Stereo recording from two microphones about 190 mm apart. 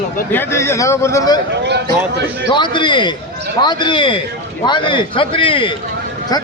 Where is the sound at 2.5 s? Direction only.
25° left (ahead or behind).